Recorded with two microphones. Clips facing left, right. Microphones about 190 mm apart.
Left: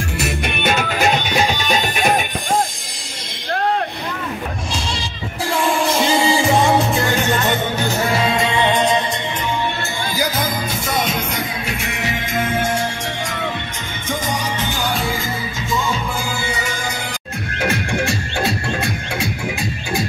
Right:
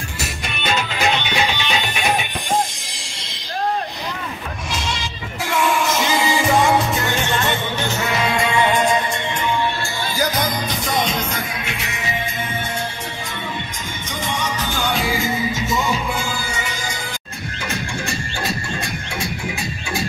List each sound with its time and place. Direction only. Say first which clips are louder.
0.4 s music: left 1 dB; 55° left (ahead or behind)
5.5 s music: left 1 dB; 30° left (ahead or behind)
8.0 s music: left 2 dB; 30° left (ahead or behind)
10.1 s music: even; 10° left (ahead or behind)
11.6 s music: left 3 dB; 50° left (ahead or behind)
12.0 s music: left 5 dB; 90° left
14.9 s music: right 2 dB; centre (ahead or behind)
17.6 s music: left 7 dB; 65° left (ahead or behind)